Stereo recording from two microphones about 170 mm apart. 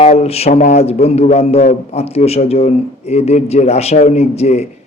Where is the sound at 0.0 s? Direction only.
40° left (ahead or behind).